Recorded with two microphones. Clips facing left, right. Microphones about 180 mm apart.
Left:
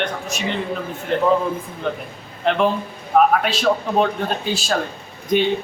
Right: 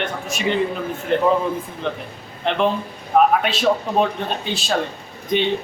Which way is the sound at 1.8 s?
5° left (ahead or behind).